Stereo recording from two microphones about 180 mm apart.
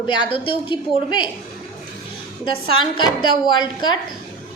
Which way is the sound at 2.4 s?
30° left (ahead or behind).